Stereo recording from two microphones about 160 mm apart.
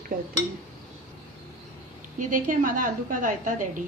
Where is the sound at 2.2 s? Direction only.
55° right (ahead or behind).